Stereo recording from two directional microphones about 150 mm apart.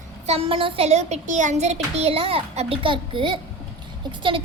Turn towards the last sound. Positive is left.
turn(degrees=-35)  # may be behind; listen again after turning